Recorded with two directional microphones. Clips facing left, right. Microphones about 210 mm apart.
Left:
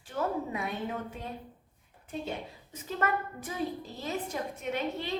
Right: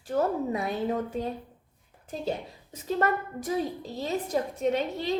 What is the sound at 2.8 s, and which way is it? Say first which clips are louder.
A woman's voice: right 5 dB; 35° right (ahead or behind).